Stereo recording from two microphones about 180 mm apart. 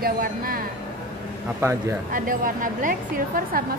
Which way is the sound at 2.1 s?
50° right (ahead or behind).